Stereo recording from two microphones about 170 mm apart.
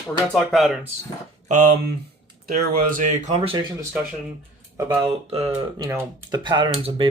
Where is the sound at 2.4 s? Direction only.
55° right (ahead or behind); by 3.6 s 35° right (ahead or behind).